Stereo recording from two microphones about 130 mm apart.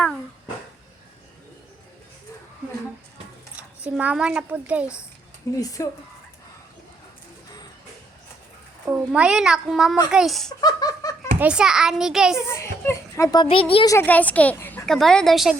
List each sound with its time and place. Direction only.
3.8 s a child's voice: 5° right (ahead or behind)
5.5 s speech: 25° left (ahead or behind)
8.9 s a child's voice: 10° right (ahead or behind)
10.6 s laughter: 30° left (ahead or behind)
11.3 s a child's voice: 10° right (ahead or behind)
12.5 s a sound: 20° left (ahead or behind)
13.4 s speech: 45° left (ahead or behind)
13.8 s speech: 25° left (ahead or behind)
14.1 s speech: 10° left (ahead or behind)
14.5 s a sound: 20° left (ahead or behind)
14.8 s a child's voice: 5° left (ahead or behind)